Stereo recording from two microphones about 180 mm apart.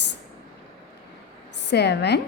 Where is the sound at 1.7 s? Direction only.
70° left (ahead or behind).